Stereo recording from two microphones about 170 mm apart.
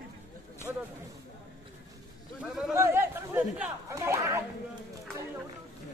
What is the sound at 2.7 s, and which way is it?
Chatter, 15° right (ahead or behind).